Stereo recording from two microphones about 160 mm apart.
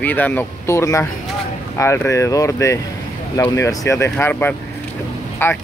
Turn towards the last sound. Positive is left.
turn(degrees=15)  # may be behind; listen again after turning